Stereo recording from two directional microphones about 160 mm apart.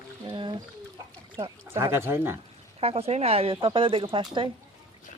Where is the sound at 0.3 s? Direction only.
30° right (ahead or behind).